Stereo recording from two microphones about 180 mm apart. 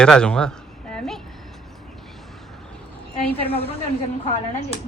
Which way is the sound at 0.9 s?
5° left (ahead or behind).